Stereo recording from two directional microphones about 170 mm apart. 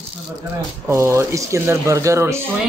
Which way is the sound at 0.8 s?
15° right (ahead or behind).